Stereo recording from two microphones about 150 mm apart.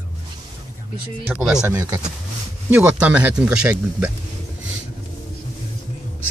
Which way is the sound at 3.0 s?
10° right (ahead or behind).